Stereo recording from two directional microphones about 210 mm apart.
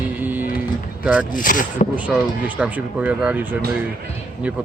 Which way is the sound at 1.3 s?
40° left (ahead or behind).